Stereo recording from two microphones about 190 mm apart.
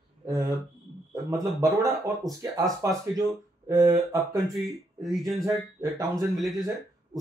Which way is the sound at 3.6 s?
15° right (ahead or behind).